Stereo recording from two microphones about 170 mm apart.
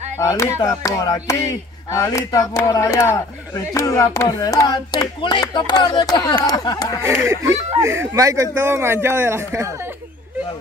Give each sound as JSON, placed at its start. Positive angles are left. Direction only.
{"t": 0.2, "sound": "speech", "side_deg": 15}
{"t": 7.8, "sound": "speech", "side_deg": -15}